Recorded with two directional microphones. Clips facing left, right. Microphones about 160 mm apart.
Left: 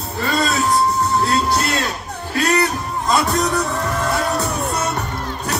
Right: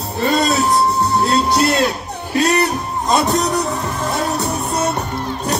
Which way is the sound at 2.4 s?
20° right (ahead or behind).